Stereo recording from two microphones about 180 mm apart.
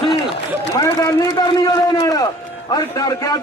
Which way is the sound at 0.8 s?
20° left (ahead or behind).